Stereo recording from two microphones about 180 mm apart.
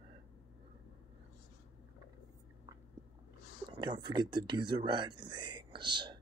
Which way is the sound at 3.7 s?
25° right (ahead or behind).